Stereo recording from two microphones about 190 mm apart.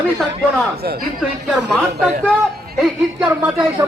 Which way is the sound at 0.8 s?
55° right (ahead or behind).